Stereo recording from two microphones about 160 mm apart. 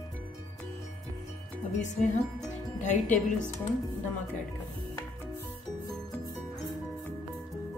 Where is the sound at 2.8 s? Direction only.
50° left (ahead or behind).